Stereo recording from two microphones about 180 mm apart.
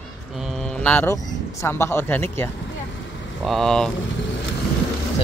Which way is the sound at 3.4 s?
Centre (ahead or behind).